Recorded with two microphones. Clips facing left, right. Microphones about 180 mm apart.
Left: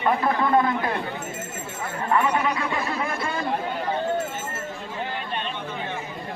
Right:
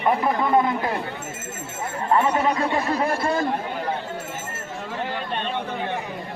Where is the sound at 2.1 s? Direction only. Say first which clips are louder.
Right 2 dB; 30° right (ahead or behind).